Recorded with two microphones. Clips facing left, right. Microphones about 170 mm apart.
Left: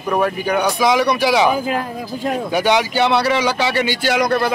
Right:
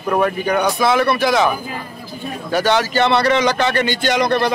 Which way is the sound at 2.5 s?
15° left (ahead or behind).